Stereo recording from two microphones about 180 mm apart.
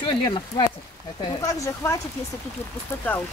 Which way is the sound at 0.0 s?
25° left (ahead or behind).